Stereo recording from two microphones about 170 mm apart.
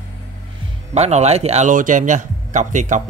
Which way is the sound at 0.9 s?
40° right (ahead or behind).